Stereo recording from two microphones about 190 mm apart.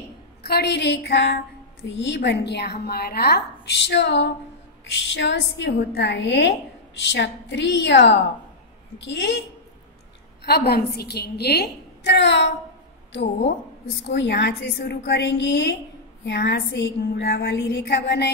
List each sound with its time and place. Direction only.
0.4 s a woman's voice: 60° left (ahead or behind)
10.7 s a woman's voice: 55° left (ahead or behind)
14.1 s a woman's voice: 65° left (ahead or behind)